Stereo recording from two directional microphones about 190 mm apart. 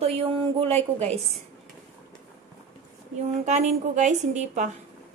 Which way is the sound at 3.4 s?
40° right (ahead or behind).